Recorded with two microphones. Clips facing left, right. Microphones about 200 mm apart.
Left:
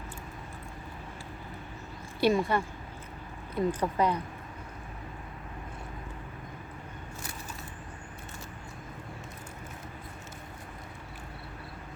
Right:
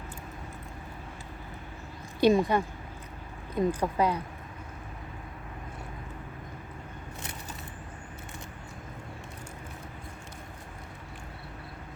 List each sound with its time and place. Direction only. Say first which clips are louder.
2.2 s speech: right 3 dB; 15° right (ahead or behind)